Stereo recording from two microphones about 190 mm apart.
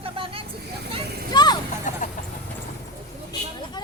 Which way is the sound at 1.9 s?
45° left (ahead or behind).